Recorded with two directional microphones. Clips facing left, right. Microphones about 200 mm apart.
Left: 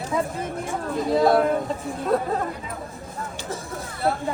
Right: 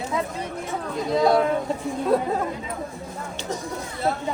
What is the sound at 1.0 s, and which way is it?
Speech, centre (ahead or behind).